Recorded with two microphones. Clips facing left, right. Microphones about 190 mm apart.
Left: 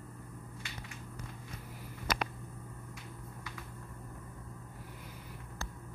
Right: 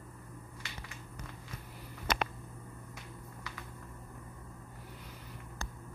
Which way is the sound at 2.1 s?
25° right (ahead or behind).